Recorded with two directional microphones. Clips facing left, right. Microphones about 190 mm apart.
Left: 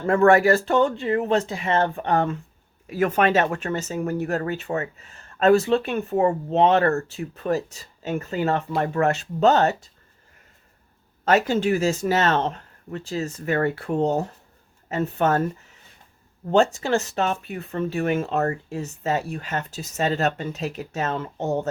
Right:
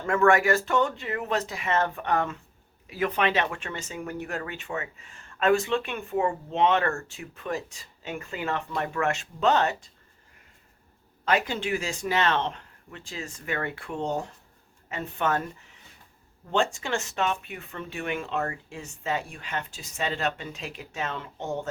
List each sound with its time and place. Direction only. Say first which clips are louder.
0.0 s speech: left 5 dB; 35° left (ahead or behind)
2.9 s speech: left 6 dB; 45° left (ahead or behind)
11.3 s speech: left 7 dB; 45° left (ahead or behind)